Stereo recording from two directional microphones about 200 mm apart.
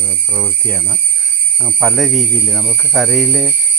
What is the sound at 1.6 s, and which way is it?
Speech, 5° right (ahead or behind).